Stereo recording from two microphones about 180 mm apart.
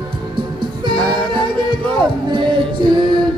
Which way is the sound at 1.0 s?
5° left (ahead or behind).